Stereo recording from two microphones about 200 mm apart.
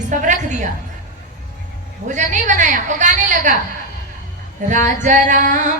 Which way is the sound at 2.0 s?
40° right (ahead or behind).